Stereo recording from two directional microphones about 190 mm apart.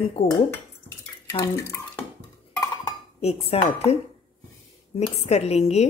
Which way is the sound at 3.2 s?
35° left (ahead or behind).